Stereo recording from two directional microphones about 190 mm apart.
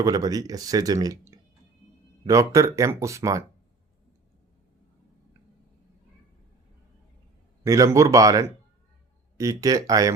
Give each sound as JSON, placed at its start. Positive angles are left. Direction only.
{"t": 0.0, "sound": "speech", "side_deg": -20}
{"t": 2.2, "sound": "speech", "side_deg": -15}
{"t": 7.6, "sound": "speech", "side_deg": -15}